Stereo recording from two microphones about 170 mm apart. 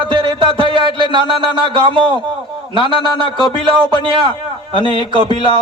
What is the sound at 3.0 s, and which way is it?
Speech, 25° left (ahead or behind).